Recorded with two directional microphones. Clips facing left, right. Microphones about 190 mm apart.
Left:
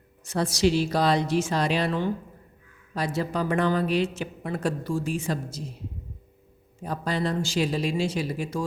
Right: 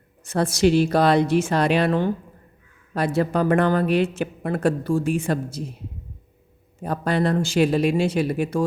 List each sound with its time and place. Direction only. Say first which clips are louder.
0.3 s speech: right 4 dB; 55° right (ahead or behind)
6.8 s speech: right 6 dB; 60° right (ahead or behind)